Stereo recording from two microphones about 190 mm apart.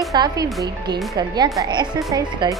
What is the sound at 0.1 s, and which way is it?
Speech, 20° right (ahead or behind).